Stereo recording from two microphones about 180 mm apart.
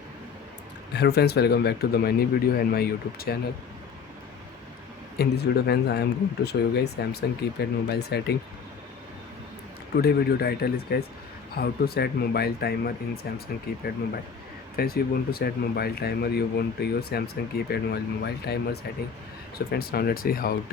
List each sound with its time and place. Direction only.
0.9 s speech: 65° left (ahead or behind)
5.1 s speech: 65° left (ahead or behind)
10.0 s speech: 60° left (ahead or behind)
14.8 s speech: 55° left (ahead or behind)